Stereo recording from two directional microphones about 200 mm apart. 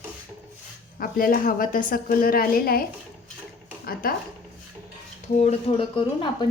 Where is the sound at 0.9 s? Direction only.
45° left (ahead or behind).